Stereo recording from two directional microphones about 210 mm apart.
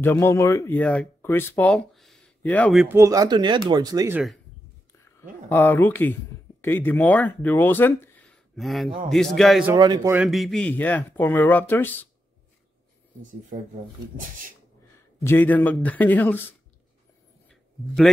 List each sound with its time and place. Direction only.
0.0 s speech: 10° left (ahead or behind)
3.0 s speech: 15° right (ahead or behind)
5.5 s a man's voice: 10° left (ahead or behind)
9.8 s speech: 20° right (ahead or behind)
10.1 s speech: centre (ahead or behind)
15.2 s speech: 10° left (ahead or behind)
17.5 s a sound: 5° left (ahead or behind)